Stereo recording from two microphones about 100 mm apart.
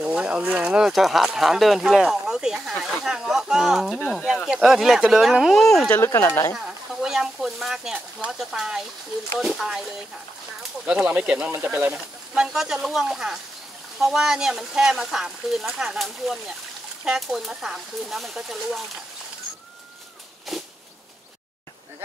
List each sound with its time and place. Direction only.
0.0 s speech: 10° right (ahead or behind)
5.9 s speech: 25° left (ahead or behind)
6.5 s speech: 5° right (ahead or behind)
20.5 s a sound: centre (ahead or behind)